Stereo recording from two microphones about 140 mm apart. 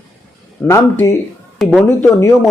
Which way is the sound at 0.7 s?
20° left (ahead or behind).